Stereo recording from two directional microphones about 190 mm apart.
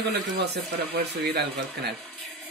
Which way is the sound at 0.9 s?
60° right (ahead or behind).